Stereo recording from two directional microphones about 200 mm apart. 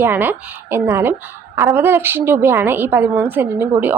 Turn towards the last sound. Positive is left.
turn(degrees=-10)  # may be behind; listen again after turning